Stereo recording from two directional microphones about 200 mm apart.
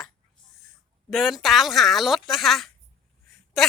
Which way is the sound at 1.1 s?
Centre (ahead or behind).